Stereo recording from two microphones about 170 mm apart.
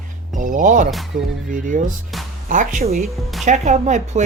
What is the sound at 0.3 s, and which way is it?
Speech, 50° right (ahead or behind).